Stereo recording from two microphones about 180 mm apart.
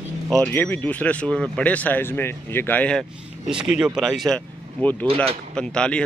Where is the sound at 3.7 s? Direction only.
5° right (ahead or behind).